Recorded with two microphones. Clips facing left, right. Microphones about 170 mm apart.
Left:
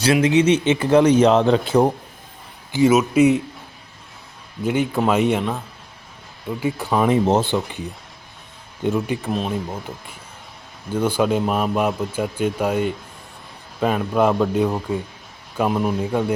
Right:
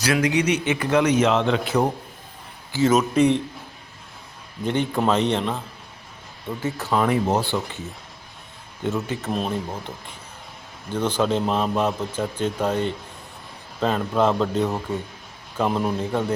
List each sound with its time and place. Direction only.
0.0 s a man's voice: 25° left (ahead or behind)
2.7 s speech: 10° left (ahead or behind)
4.6 s speech: 10° left (ahead or behind)
9.3 s speech: centre (ahead or behind)
10.9 s speech: 10° left (ahead or behind)